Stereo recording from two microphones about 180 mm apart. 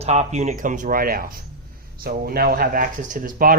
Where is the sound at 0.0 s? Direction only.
35° right (ahead or behind).